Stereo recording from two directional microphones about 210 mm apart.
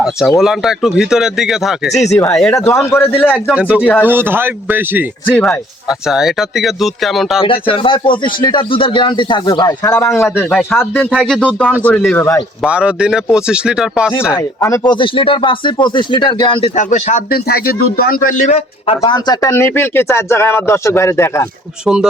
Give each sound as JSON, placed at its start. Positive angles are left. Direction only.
{"t": 0.0, "sound": "speech", "side_deg": 0}
{"t": 1.9, "sound": "speech", "side_deg": 30}
{"t": 2.1, "sound": "speech", "side_deg": 5}
{"t": 3.5, "sound": "speech", "side_deg": -5}
{"t": 5.3, "sound": "speech", "side_deg": 10}
{"t": 5.9, "sound": "speech", "side_deg": 0}
{"t": 7.4, "sound": "speech", "side_deg": 25}
{"t": 10.1, "sound": "speech", "side_deg": 0}
{"t": 12.6, "sound": "speech", "side_deg": -5}
{"t": 14.1, "sound": "speech", "side_deg": 10}
{"t": 17.3, "sound": "speech", "side_deg": 45}